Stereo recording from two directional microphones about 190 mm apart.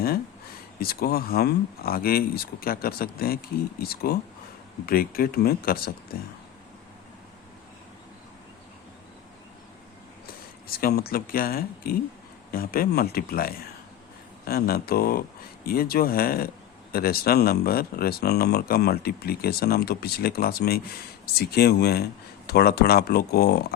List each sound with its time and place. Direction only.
0.8 s speech: 55° left (ahead or behind)
10.7 s speech: 50° left (ahead or behind)